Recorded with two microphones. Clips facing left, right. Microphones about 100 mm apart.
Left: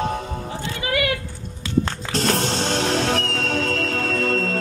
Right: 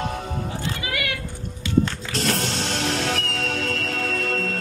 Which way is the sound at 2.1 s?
30° left (ahead or behind).